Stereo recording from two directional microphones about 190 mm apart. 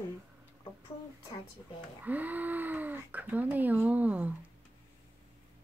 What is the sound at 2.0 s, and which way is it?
Speech, 10° right (ahead or behind).